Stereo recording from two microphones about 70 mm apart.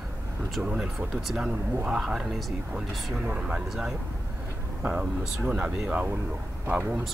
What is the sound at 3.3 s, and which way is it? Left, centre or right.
Speech, centre.